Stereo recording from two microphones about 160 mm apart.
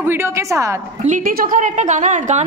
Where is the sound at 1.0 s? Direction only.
55° right (ahead or behind).